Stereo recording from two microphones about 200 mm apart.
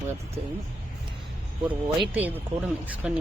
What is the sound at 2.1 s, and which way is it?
Speech, 10° right (ahead or behind).